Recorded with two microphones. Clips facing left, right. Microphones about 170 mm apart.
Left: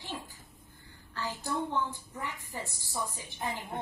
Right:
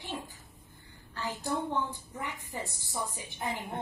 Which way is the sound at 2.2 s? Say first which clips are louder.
Right 1 dB; 20° right (ahead or behind).